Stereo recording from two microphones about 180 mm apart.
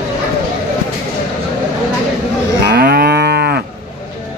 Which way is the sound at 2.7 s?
60° right (ahead or behind).